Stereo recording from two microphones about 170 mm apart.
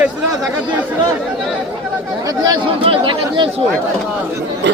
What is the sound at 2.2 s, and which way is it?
Speech, 25° right (ahead or behind).